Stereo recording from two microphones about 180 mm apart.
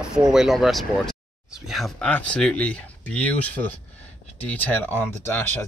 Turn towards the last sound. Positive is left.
turn(degrees=10)  # may be behind; listen again after turning